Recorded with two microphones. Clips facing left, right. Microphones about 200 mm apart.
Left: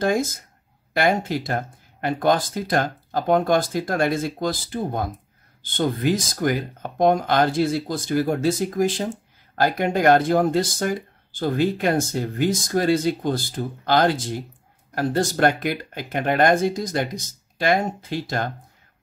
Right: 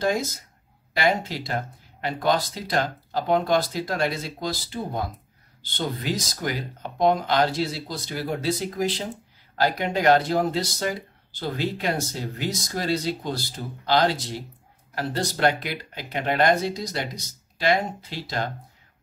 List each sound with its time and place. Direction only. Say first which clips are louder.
0.0 s speech: left 3 dB; 50° left (ahead or behind)